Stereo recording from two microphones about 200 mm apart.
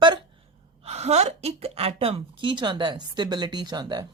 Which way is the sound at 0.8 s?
30° right (ahead or behind).